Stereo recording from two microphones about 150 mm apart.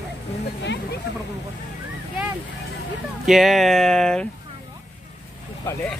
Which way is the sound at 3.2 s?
Centre (ahead or behind).